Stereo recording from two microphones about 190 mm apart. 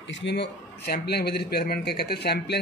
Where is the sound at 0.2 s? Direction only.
65° left (ahead or behind).